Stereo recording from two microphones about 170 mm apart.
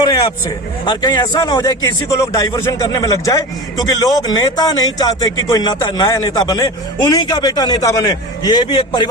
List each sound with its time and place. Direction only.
0.9 s a man's voice: 25° left (ahead or behind)